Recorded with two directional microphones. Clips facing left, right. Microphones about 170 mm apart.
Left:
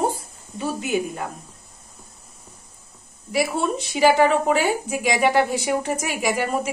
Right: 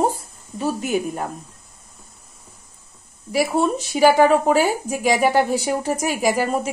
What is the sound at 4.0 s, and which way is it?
Speech, 40° right (ahead or behind).